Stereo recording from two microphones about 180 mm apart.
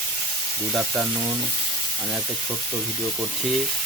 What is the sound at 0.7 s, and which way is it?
Speech, 5° right (ahead or behind).